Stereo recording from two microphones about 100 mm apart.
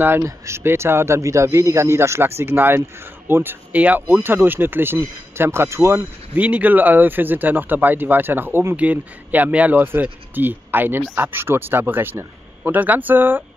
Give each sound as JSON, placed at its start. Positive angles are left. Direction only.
{"t": 0.0, "sound": "speech", "side_deg": -25}
{"t": 6.3, "sound": "speech", "side_deg": -15}